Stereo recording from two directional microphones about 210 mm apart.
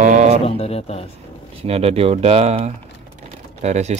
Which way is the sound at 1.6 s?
30° right (ahead or behind).